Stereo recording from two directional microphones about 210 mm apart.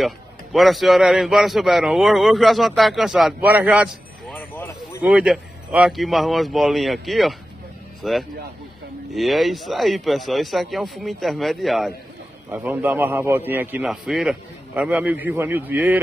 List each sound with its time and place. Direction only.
0.0 s a man's voice: centre (ahead or behind)
4.3 s vehicle: 10° left (ahead or behind)
5.0 s a man's voice: 5° right (ahead or behind)